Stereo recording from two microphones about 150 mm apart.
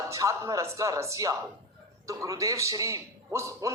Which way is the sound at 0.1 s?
20° right (ahead or behind).